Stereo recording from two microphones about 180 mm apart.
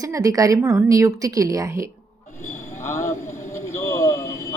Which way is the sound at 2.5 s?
15° left (ahead or behind).